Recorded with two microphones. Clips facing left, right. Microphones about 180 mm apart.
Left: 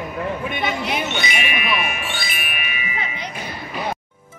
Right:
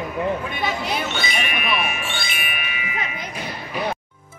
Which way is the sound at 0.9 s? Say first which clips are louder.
Left 1 dB; 15° left (ahead or behind).